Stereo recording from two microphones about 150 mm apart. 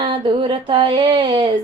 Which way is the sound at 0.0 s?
35° right (ahead or behind).